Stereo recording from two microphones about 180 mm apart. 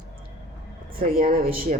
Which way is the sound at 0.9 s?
55° right (ahead or behind).